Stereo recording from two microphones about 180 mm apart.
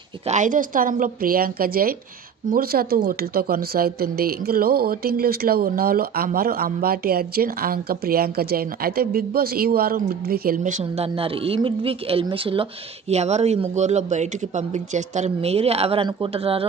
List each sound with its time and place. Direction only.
0.3 s a woman's voice: 45° right (ahead or behind)